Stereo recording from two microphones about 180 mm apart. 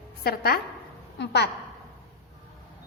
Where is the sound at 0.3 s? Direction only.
60° left (ahead or behind).